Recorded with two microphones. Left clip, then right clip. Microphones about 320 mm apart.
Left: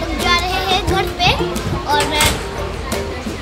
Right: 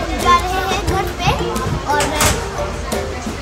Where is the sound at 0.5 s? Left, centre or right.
Centre.